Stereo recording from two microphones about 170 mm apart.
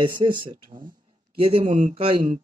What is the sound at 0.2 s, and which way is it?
Speech, 30° right (ahead or behind).